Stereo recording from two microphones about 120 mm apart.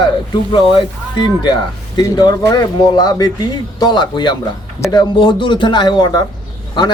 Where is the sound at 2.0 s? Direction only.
35° left (ahead or behind).